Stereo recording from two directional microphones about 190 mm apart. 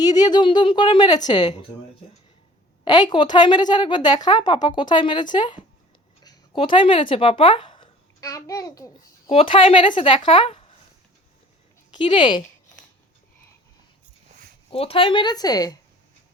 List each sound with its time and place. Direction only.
0.0 s a woman's voice: 20° left (ahead or behind)
2.8 s a woman's voice: 25° left (ahead or behind)
9.3 s a woman's voice: 30° left (ahead or behind)
11.9 s speech: 25° left (ahead or behind)
14.7 s a woman's voice: 30° left (ahead or behind)